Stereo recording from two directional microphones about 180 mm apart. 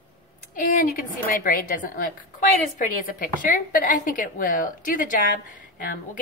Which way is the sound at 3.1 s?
50° left (ahead or behind).